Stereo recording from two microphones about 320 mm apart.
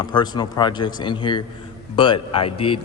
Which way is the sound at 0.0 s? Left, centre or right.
Centre.